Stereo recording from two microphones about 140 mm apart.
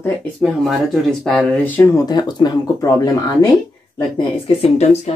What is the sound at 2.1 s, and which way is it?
Speech, 30° left (ahead or behind).